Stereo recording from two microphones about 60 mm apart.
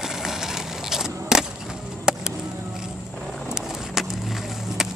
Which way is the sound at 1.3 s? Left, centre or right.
Centre.